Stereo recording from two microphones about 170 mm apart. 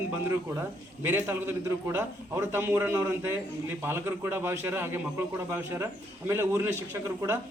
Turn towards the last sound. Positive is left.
turn(degrees=-15)  # may be behind; listen again after turning